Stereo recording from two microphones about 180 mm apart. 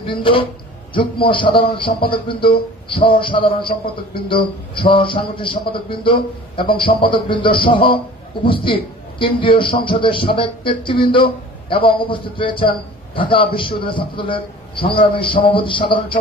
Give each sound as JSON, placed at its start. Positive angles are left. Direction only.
{"t": 0.0, "sound": "a man's voice", "side_deg": 30}